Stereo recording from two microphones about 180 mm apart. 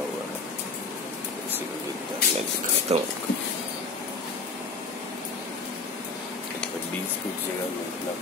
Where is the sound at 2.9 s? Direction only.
35° right (ahead or behind).